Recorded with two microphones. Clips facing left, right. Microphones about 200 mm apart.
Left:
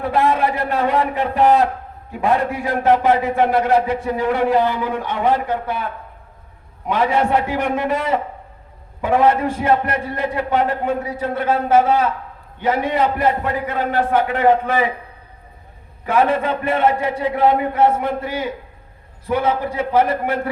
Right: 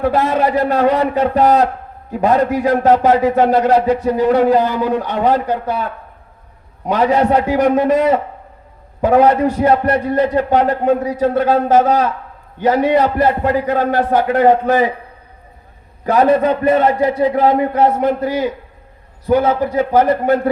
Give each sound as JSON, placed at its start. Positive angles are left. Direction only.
{"t": 0.1, "sound": "a man's voice", "side_deg": -40}
{"t": 16.0, "sound": "a man's voice", "side_deg": -40}